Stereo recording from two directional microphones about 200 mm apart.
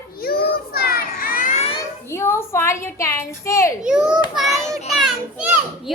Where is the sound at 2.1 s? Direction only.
10° left (ahead or behind).